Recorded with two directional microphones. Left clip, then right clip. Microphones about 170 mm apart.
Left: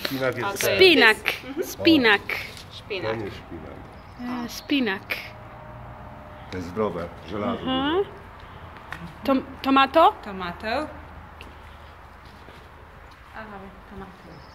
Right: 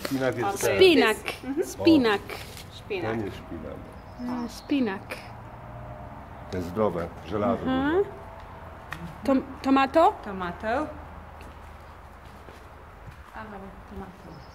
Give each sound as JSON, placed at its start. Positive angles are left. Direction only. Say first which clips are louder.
{"t": 0.0, "sound": "speech", "louder": "left 1 dB", "side_deg": -15}
{"t": 2.9, "sound": "a woman's voice", "louder": "left 2 dB", "side_deg": -15}
{"t": 4.3, "sound": "speech", "louder": "left 3 dB", "side_deg": 0}
{"t": 6.6, "sound": "speech", "louder": "even", "side_deg": -35}
{"t": 7.4, "sound": "speech", "louder": "left 1 dB", "side_deg": -20}
{"t": 9.2, "sound": "a woman's voice", "louder": "left 2 dB", "side_deg": -10}
{"t": 10.2, "sound": "speech", "louder": "even", "side_deg": 5}